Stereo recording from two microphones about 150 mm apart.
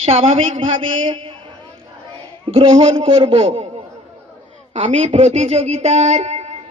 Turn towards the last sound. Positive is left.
turn(degrees=-45)  # may be behind; listen again after turning